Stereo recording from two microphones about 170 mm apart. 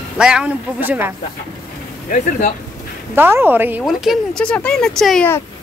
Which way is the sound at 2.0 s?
50° left (ahead or behind).